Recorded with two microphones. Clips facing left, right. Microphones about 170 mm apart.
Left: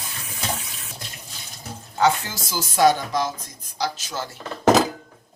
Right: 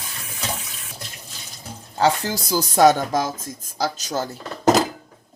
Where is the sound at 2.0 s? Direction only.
35° right (ahead or behind).